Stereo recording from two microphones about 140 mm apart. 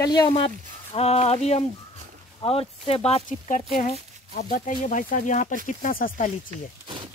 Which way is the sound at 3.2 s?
65° left (ahead or behind).